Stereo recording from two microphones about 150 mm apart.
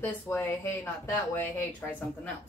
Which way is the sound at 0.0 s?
15° left (ahead or behind).